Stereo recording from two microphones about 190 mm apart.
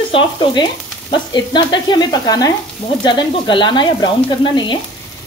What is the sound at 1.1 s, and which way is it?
Frying, 25° left (ahead or behind).